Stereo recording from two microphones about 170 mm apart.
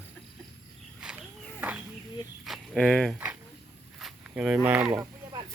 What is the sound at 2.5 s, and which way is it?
Speech, centre (ahead or behind).